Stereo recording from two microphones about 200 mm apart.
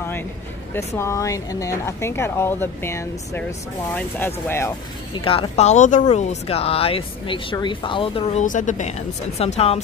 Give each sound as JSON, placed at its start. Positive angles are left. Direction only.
{"t": 0.7, "sound": "speech", "side_deg": 15}
{"t": 4.5, "sound": "speech", "side_deg": 10}
{"t": 5.1, "sound": "speech", "side_deg": 25}
{"t": 8.5, "sound": "speech", "side_deg": 40}